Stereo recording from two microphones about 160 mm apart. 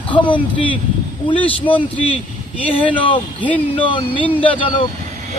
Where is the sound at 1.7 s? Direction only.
35° left (ahead or behind).